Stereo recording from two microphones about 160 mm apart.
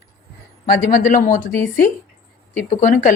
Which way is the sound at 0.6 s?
60° left (ahead or behind).